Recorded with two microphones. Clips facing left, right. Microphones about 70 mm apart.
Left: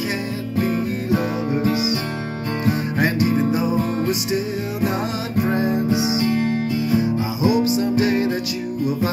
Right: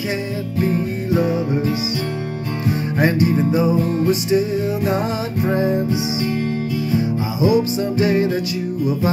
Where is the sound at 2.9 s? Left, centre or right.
Right.